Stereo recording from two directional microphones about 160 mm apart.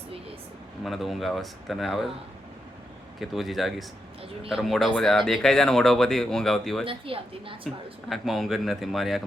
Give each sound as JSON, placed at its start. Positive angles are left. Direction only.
{"t": 0.9, "sound": "speech", "side_deg": 0}
{"t": 3.2, "sound": "speech", "side_deg": 0}
{"t": 6.8, "sound": "a woman's voice", "side_deg": -35}
{"t": 8.1, "sound": "speech", "side_deg": 0}